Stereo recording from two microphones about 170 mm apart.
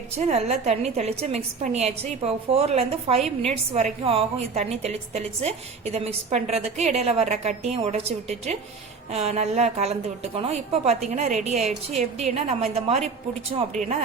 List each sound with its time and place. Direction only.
0.2 s a woman's voice: 40° right (ahead or behind)